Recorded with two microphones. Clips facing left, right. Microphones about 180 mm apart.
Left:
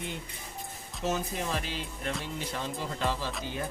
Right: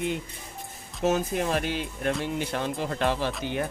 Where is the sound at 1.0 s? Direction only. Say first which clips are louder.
Right 7 dB; 55° right (ahead or behind).